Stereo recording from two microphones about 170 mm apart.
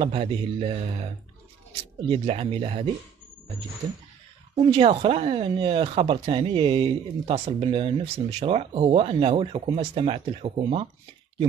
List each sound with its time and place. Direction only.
0.0 s speech: 35° right (ahead or behind)
2.0 s speech: 35° right (ahead or behind)
4.6 s speech: 30° right (ahead or behind)